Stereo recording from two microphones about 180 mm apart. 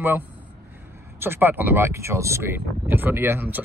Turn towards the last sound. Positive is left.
turn(degrees=-10)  # may be behind; listen again after turning